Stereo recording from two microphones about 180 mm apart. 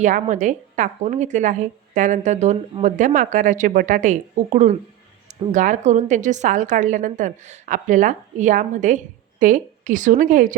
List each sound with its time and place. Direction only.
0.0 s a woman's voice: 45° right (ahead or behind)